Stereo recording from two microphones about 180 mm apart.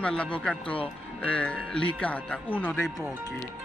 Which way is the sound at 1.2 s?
5° left (ahead or behind).